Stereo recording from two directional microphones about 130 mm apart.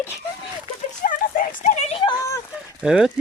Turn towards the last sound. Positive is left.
turn(degrees=-5)  # may be behind; listen again after turning